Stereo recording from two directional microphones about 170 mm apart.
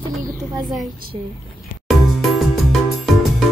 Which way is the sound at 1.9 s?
Centre (ahead or behind).